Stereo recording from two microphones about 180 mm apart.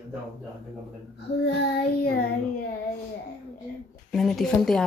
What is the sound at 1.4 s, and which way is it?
Child singing, 65° left (ahead or behind).